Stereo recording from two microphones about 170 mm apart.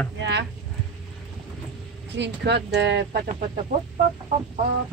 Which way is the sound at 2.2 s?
90° right.